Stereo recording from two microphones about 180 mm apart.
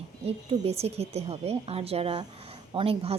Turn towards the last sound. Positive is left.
turn(degrees=-30)  # may be behind; listen again after turning